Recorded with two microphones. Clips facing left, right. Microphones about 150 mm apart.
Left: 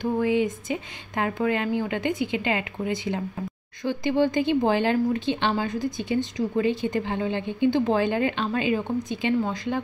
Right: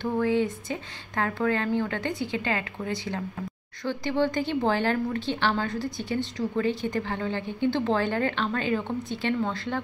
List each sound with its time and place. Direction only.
0.0 s a woman's voice: 15° left (ahead or behind)